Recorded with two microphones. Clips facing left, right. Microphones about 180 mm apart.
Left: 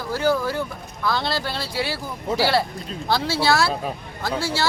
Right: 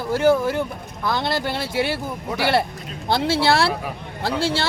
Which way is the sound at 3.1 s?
25° right (ahead or behind).